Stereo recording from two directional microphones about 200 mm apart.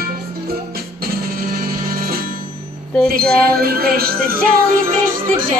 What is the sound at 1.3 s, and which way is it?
Music, 45° right (ahead or behind).